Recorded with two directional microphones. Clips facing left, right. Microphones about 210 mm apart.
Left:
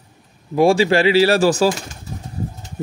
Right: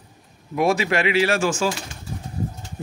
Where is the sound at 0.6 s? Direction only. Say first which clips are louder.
Left 6 dB; 30° left (ahead or behind).